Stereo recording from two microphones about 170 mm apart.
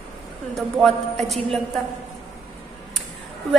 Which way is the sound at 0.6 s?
Centre (ahead or behind).